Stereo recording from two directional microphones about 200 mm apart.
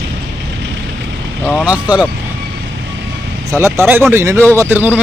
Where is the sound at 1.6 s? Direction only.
5° right (ahead or behind).